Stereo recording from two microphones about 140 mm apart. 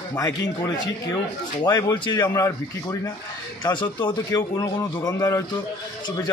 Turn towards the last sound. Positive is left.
turn(degrees=20)  # may be behind; listen again after turning